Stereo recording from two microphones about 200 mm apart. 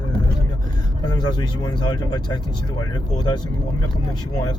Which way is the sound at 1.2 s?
20° left (ahead or behind).